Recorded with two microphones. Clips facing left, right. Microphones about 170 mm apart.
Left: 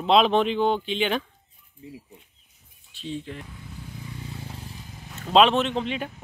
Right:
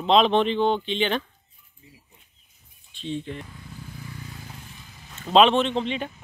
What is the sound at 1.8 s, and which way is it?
Speech, 80° left.